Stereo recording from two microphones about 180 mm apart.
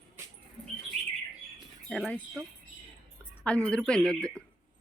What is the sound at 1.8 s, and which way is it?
Speech, centre (ahead or behind).